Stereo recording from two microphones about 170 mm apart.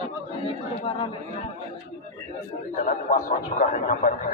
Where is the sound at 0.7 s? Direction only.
30° left (ahead or behind).